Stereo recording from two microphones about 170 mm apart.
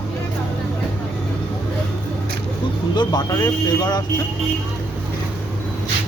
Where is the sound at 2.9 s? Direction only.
25° left (ahead or behind).